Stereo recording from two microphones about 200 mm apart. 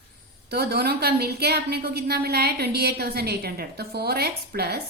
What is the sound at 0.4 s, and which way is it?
A woman's voice, 55° right (ahead or behind).